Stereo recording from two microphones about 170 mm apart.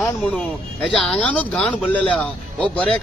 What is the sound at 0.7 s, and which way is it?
Speech, 5° left (ahead or behind).